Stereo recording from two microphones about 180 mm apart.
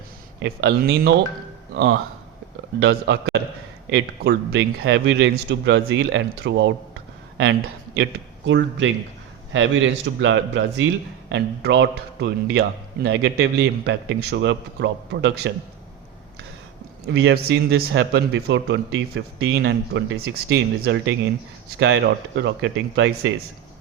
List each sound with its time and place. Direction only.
0.4 s a man's voice: 65° right (ahead or behind)
8.4 s speech: 90° right
11.3 s a man's voice: 80° right
17.1 s a man's voice: 80° right